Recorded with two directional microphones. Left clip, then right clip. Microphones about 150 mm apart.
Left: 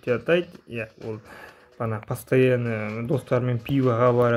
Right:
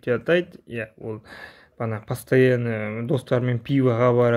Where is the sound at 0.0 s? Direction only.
20° right (ahead or behind).